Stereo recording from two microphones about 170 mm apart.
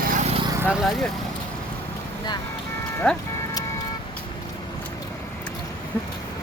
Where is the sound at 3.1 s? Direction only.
5° left (ahead or behind).